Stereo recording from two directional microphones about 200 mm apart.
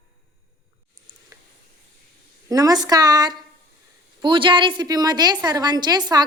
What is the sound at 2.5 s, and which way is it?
A woman's voice, 20° right (ahead or behind).